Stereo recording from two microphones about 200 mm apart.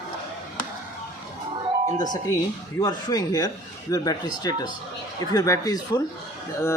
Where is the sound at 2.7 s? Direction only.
20° left (ahead or behind).